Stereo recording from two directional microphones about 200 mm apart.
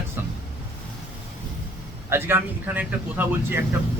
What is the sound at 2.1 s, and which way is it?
A man's voice, 10° right (ahead or behind).